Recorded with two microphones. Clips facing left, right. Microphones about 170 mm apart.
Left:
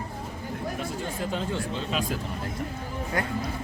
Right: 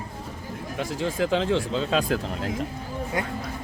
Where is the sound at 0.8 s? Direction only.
90° right.